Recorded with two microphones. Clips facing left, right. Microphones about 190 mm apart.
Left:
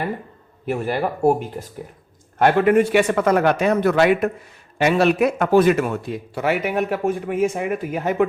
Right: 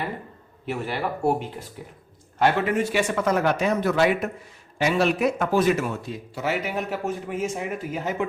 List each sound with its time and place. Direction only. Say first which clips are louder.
0.7 s speech: left 5 dB; 45° left (ahead or behind)